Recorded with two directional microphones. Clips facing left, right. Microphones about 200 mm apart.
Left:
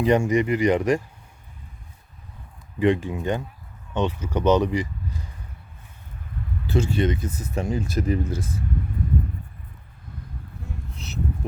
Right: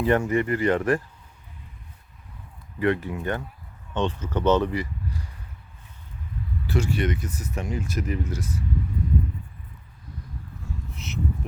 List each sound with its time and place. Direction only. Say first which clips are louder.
0.0 s speech: left 2 dB; 15° left (ahead or behind)
2.7 s speech: left 3 dB; 15° left (ahead or behind)
6.7 s speech: left 3 dB; 25° left (ahead or behind)
8.2 s speech: left 2 dB; 55° left (ahead or behind)